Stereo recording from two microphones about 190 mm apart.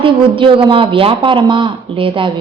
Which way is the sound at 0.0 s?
25° right (ahead or behind).